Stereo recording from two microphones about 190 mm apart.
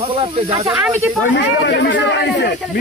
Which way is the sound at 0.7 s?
10° right (ahead or behind).